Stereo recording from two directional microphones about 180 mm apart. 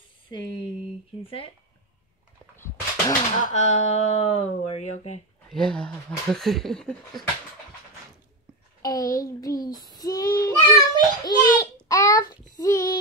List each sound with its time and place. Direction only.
1.2 s speech: 30° left (ahead or behind)
2.5 s a sound: 15° left (ahead or behind)
3.4 s speech: 40° left (ahead or behind)
5.5 s speech: 5° left (ahead or behind)
8.8 s a child's voice: 20° left (ahead or behind)